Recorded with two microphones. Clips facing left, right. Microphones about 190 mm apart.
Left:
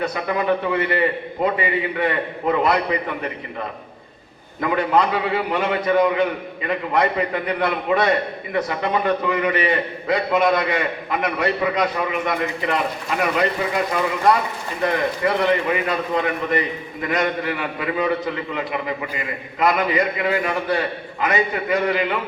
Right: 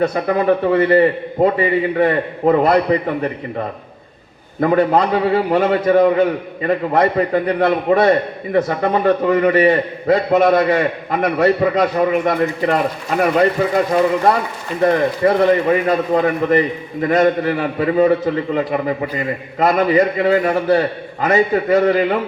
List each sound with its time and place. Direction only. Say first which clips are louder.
0.0 s a man's voice: right 6 dB; 40° right (ahead or behind)
4.6 s a man's voice: right 5 dB; 40° right (ahead or behind)